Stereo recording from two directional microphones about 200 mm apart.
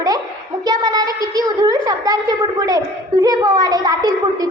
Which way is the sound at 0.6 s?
20° right (ahead or behind).